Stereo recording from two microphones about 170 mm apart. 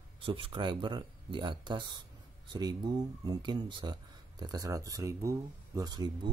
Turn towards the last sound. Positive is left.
turn(degrees=-25)  # may be behind; listen again after turning